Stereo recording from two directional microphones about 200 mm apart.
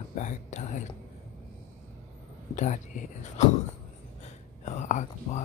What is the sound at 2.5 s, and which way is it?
Speech, 35° left (ahead or behind).